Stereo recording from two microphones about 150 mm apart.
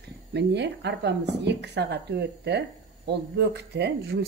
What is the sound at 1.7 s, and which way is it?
Speech, 90° right.